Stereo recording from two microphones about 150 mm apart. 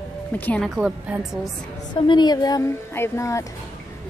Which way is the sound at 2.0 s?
30° left (ahead or behind).